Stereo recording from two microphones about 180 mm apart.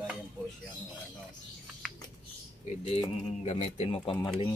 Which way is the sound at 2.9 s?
35° left (ahead or behind).